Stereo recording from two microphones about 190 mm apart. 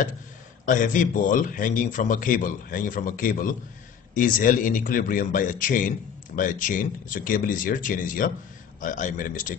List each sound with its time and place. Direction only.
0.7 s speech: 45° left (ahead or behind)